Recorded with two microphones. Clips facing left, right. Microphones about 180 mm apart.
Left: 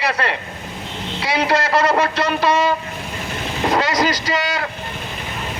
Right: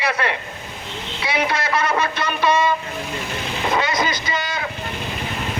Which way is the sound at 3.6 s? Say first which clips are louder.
Left 4 dB; 40° left (ahead or behind).